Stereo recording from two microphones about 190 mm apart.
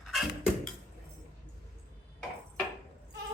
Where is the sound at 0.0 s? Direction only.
Centre (ahead or behind).